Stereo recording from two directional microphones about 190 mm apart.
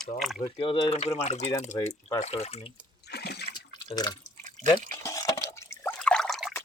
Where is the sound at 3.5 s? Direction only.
20° left (ahead or behind).